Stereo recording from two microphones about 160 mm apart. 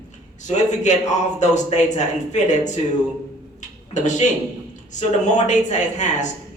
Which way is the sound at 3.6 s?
50° left (ahead or behind).